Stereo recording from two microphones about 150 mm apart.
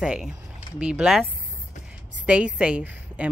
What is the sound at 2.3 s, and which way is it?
A woman's voice, 5° right (ahead or behind).